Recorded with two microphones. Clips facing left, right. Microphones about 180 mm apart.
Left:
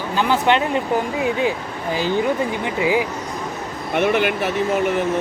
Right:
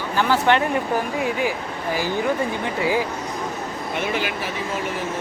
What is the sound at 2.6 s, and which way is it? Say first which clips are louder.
Speech: left 3 dB; 15° left (ahead or behind).